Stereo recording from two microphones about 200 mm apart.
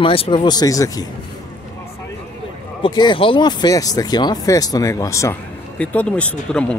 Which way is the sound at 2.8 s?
25° left (ahead or behind).